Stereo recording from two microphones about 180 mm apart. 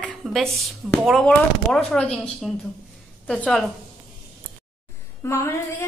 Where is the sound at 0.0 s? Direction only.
Centre (ahead or behind).